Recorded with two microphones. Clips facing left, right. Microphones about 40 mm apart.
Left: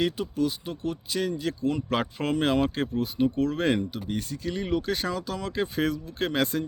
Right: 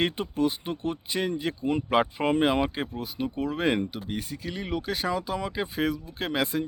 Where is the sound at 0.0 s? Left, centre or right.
Right.